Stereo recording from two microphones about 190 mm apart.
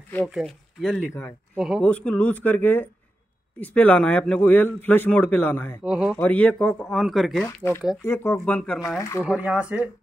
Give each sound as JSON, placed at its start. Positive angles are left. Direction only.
{"t": 0.3, "sound": "speech", "side_deg": 0}
{"t": 5.9, "sound": "speech", "side_deg": -5}
{"t": 6.1, "sound": "speech", "side_deg": 10}
{"t": 7.4, "sound": "speech", "side_deg": 15}
{"t": 9.2, "sound": "speech", "side_deg": -5}